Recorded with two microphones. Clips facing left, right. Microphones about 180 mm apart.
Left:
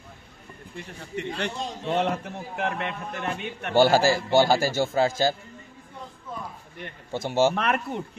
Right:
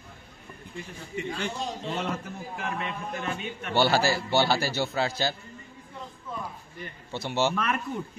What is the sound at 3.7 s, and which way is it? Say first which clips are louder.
A man's voice: left 5 dB; 45° left (ahead or behind).